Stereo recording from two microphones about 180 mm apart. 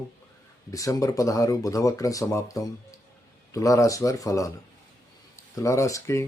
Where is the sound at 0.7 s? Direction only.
20° left (ahead or behind).